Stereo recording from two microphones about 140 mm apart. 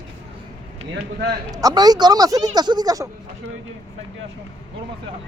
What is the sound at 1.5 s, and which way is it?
Speech, 30° right (ahead or behind).